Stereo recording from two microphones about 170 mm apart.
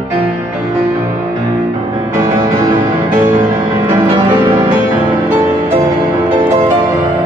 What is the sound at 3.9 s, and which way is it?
Music, 20° right (ahead or behind).